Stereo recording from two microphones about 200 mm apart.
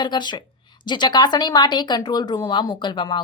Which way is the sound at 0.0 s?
20° left (ahead or behind).